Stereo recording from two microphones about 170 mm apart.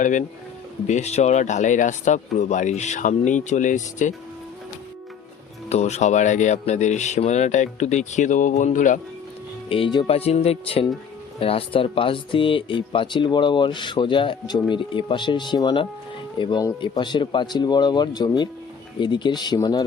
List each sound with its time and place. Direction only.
0.0 s speech: 50° left (ahead or behind)
5.6 s speech: 40° left (ahead or behind)
9.6 s speech: 30° left (ahead or behind)